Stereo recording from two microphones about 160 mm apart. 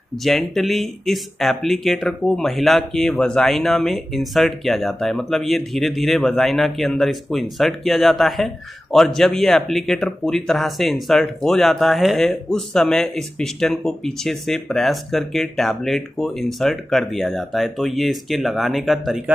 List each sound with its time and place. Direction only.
0.2 s speech: centre (ahead or behind)